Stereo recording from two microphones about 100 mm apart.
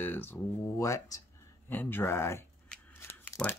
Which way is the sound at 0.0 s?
20° left (ahead or behind).